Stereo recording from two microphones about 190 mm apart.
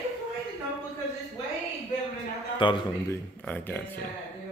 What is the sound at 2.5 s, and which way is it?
Speech, 25° left (ahead or behind).